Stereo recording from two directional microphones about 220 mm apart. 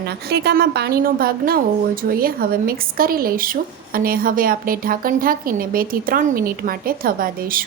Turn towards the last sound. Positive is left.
turn(degrees=-40)  # may be behind; listen again after turning